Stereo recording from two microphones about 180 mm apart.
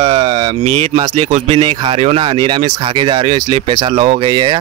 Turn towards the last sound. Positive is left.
turn(degrees=-25)  # may be behind; listen again after turning